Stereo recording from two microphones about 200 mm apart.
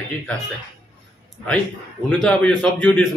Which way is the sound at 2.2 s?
5° left (ahead or behind).